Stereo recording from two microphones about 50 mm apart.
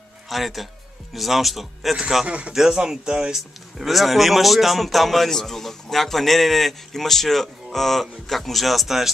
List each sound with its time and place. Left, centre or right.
0.3 s speech: centre
2.2 s speech: right
2.5 s speech: centre